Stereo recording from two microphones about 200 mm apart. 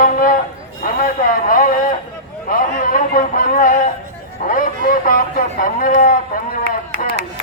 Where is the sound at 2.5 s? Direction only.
45° left (ahead or behind).